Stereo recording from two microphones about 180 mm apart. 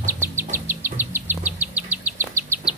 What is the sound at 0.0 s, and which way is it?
Insect, 15° right (ahead or behind).